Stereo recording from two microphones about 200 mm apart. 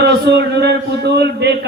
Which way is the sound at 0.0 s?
55° right (ahead or behind).